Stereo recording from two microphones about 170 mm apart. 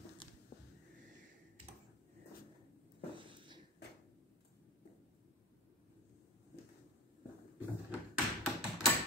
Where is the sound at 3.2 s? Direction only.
30° right (ahead or behind).